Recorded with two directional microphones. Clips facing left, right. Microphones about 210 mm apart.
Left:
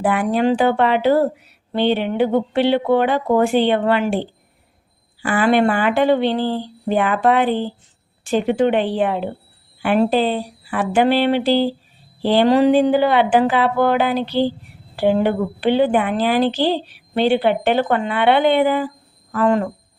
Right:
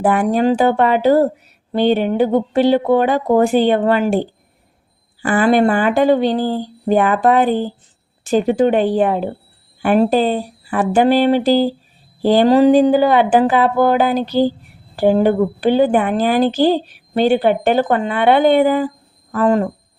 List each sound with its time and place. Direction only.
0.0 s a woman's voice: 45° right (ahead or behind)